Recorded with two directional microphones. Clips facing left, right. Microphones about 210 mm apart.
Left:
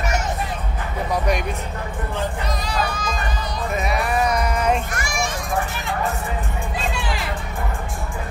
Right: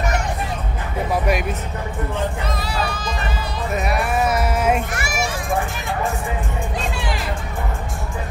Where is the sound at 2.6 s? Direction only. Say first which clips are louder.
Left 1 dB; 10° right (ahead or behind).